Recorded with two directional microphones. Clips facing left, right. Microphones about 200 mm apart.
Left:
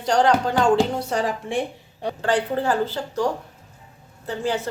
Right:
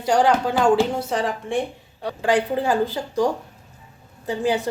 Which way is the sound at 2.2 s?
15° right (ahead or behind).